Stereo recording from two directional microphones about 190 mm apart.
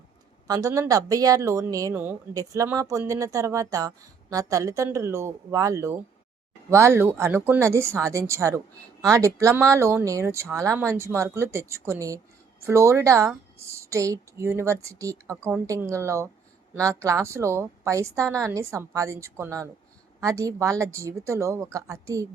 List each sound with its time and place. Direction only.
0.4 s speech: 20° right (ahead or behind)